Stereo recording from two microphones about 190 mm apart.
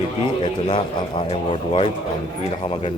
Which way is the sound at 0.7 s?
30° left (ahead or behind).